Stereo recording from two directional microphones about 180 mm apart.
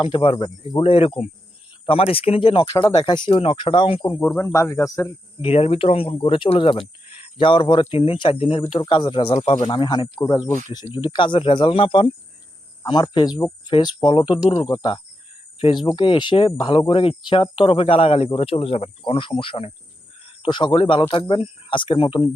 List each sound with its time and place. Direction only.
0.0 s speech: 30° left (ahead or behind)
4.5 s speech: 15° left (ahead or behind)
5.4 s speech: 35° left (ahead or behind)